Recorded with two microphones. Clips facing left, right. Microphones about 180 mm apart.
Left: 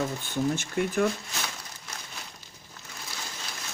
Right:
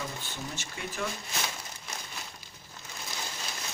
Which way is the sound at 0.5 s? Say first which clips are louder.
Left 12 dB; 55° left (ahead or behind).